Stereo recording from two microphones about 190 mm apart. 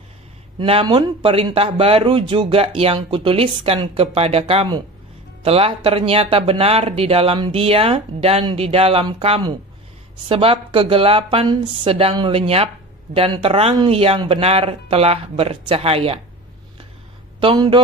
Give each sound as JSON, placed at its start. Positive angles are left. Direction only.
{"t": 0.6, "sound": "speech", "side_deg": -25}
{"t": 17.4, "sound": "speech", "side_deg": -25}